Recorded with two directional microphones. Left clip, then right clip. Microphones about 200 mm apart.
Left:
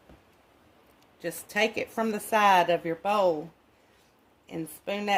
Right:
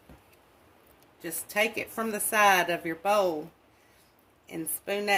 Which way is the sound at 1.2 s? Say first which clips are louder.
Left 1 dB; 30° left (ahead or behind).